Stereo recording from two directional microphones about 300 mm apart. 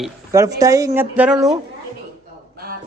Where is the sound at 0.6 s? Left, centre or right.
Centre.